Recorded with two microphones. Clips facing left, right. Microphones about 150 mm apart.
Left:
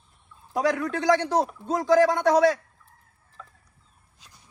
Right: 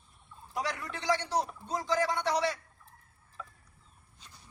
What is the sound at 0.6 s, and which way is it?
Speech, 90° left.